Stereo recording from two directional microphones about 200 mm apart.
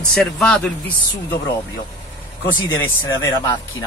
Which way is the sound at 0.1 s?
5° left (ahead or behind).